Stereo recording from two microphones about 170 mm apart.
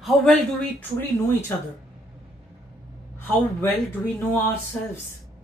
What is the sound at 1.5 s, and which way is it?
Speech, 15° left (ahead or behind).